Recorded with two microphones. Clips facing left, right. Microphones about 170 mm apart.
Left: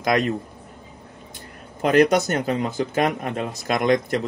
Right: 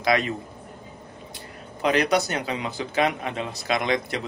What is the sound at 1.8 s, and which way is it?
Speech, 50° left (ahead or behind).